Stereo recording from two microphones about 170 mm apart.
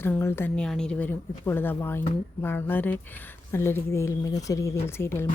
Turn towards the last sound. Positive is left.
turn(degrees=15)  # may be behind; listen again after turning